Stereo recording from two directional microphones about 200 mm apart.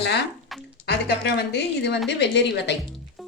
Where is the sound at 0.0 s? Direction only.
60° left (ahead or behind).